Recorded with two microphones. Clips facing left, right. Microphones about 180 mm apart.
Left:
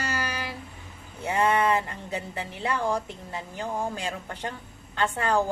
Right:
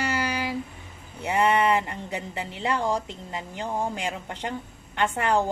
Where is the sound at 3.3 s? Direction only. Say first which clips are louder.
Right 2 dB; 15° right (ahead or behind).